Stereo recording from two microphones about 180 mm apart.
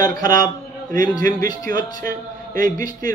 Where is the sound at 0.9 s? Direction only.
50° right (ahead or behind).